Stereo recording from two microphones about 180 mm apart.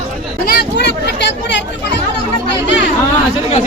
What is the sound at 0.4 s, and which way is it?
Speech, 65° left (ahead or behind).